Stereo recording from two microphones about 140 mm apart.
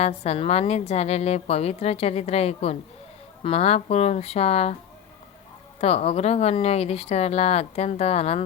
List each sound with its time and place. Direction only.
0.0 s a woman's voice: 50° left (ahead or behind)
5.8 s a woman's voice: 45° left (ahead or behind)